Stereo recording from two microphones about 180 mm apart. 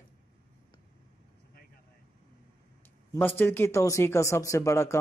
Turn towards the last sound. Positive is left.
turn(degrees=15)  # may be behind; listen again after turning